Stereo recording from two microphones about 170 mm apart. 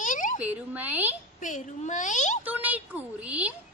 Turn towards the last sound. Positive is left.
turn(degrees=-5)  # may be behind; listen again after turning